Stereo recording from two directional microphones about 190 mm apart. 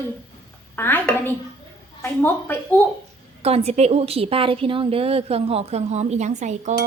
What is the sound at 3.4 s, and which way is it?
A woman's voice, 35° right (ahead or behind).